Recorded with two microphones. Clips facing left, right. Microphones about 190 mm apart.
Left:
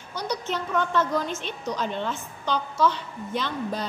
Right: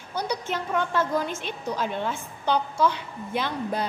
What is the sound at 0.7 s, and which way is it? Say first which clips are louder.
A woman's voice: left 1 dB; 10° right (ahead or behind).